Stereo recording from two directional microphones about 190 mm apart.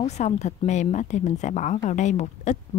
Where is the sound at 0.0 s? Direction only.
35° left (ahead or behind).